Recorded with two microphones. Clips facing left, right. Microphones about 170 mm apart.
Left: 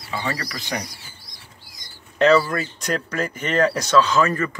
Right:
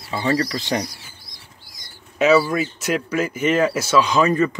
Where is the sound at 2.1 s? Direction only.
5° right (ahead or behind).